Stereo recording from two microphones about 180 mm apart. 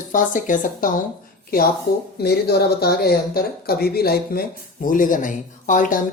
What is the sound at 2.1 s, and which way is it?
Speech, 60° left (ahead or behind).